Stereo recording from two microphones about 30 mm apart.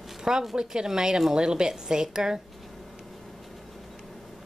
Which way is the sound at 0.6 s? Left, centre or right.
Right.